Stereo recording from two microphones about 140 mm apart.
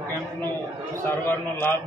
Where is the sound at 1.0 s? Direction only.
15° left (ahead or behind).